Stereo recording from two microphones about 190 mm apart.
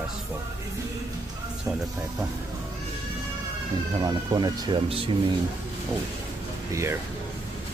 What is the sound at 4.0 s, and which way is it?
Speech, 20° right (ahead or behind).